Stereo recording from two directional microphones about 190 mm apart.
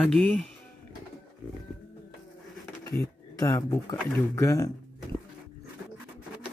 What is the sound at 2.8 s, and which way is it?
Speech, 15° left (ahead or behind).